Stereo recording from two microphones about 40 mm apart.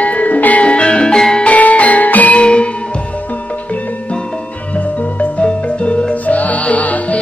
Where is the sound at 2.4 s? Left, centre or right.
Left.